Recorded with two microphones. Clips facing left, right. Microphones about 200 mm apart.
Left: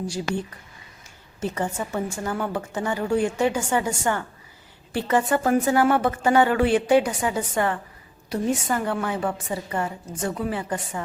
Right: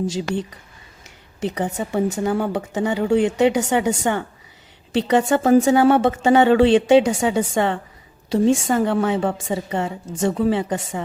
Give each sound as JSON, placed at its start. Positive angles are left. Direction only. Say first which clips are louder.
{"t": 0.1, "sound": "a woman's voice", "louder": "right 3 dB", "side_deg": -20}
{"t": 1.5, "sound": "a woman's voice", "louder": "right 3 dB", "side_deg": -20}